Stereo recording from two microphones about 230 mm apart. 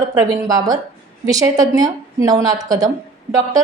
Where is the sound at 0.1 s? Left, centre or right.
Centre.